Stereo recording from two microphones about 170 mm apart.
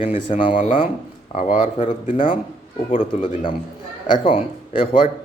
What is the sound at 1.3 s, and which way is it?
Speech, 45° left (ahead or behind).